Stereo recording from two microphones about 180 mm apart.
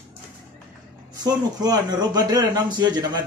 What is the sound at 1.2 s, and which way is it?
A man's voice, 20° right (ahead or behind).